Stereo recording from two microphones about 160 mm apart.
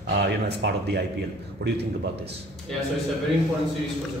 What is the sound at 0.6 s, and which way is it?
Speech, 90° right.